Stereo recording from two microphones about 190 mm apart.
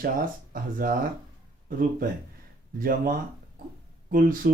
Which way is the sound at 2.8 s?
50° right (ahead or behind).